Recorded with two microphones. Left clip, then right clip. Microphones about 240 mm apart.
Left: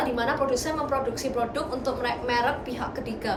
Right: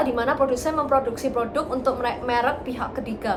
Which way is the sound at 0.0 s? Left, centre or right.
Centre.